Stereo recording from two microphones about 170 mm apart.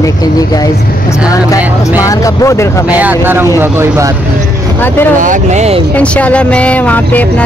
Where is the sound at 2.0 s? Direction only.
20° left (ahead or behind).